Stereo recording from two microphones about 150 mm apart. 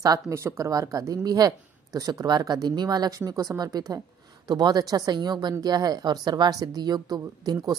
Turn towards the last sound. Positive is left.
turn(degrees=-25)  # may be behind; listen again after turning